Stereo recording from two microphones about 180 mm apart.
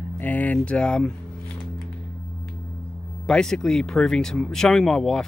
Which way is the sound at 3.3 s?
5° left (ahead or behind).